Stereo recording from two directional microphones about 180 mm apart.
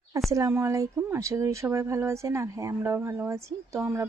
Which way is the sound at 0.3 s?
15° right (ahead or behind).